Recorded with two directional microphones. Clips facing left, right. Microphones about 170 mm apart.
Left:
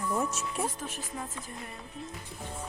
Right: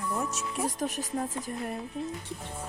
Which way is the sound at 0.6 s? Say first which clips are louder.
Right 4 dB; 40° right (ahead or behind).